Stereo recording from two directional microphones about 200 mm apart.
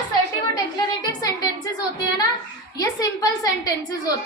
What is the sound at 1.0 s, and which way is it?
Speech, 20° left (ahead or behind).